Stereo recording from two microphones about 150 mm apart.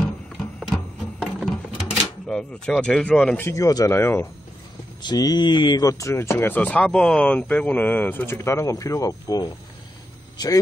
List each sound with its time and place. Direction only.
0.4 s printer: centre (ahead or behind)
1.2 s a sound: 5° right (ahead or behind)
3.4 s speech: 20° left (ahead or behind)